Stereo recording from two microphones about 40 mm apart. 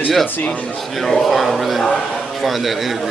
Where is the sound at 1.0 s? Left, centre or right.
Centre.